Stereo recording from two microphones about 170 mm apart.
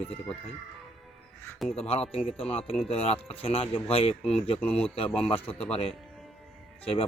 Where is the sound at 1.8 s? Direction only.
35° left (ahead or behind).